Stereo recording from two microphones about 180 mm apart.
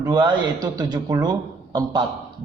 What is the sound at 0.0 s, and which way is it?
A man's voice, 25° right (ahead or behind).